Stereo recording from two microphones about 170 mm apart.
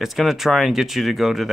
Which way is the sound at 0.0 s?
Centre (ahead or behind).